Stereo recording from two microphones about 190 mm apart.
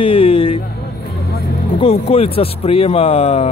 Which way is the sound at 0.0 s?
30° left (ahead or behind).